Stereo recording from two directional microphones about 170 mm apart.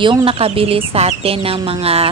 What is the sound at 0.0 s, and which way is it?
Speech, 30° right (ahead or behind).